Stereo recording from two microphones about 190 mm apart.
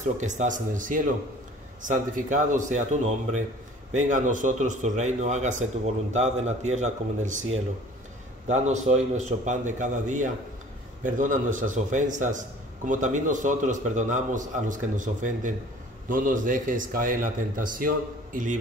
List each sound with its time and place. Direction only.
0.0 s a man's voice: 40° right (ahead or behind)